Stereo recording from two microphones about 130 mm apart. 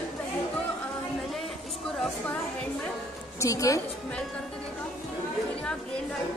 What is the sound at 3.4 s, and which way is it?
Speech, 25° left (ahead or behind).